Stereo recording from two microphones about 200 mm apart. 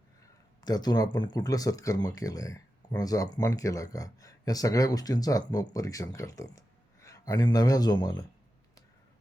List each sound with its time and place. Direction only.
0.6 s speech: 20° left (ahead or behind)